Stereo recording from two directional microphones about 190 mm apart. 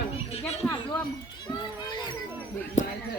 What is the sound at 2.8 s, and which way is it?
Speech, 40° left (ahead or behind).